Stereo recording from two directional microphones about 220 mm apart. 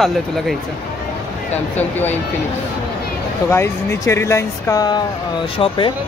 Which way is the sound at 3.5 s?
10° left (ahead or behind).